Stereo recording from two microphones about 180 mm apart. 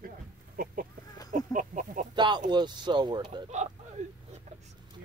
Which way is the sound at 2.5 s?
25° right (ahead or behind).